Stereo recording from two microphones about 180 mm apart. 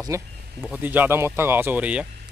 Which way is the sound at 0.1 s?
15° right (ahead or behind).